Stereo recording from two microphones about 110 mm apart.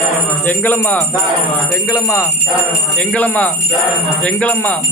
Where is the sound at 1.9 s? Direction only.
25° left (ahead or behind).